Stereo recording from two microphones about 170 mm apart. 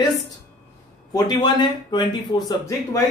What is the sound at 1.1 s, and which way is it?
Speech, 25° left (ahead or behind).